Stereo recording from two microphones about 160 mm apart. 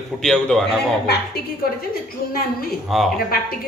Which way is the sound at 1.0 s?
80° left.